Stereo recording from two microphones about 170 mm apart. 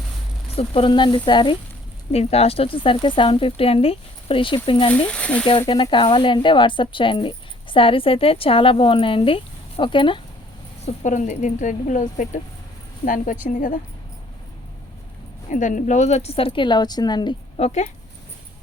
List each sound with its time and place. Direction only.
0.5 s speech: 35° left (ahead or behind)
4.9 s speech: 10° left (ahead or behind)
5.5 s speech: 30° left (ahead or behind)
10.8 s speech: 45° left (ahead or behind)
13.5 s speech: 50° left (ahead or behind)
15.4 s speech: 50° left (ahead or behind); by 17.3 s 25° left (ahead or behind)
17.6 s speech: 40° left (ahead or behind)